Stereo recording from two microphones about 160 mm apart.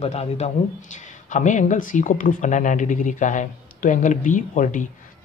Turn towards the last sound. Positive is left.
turn(degrees=55)  # may be behind; listen again after turning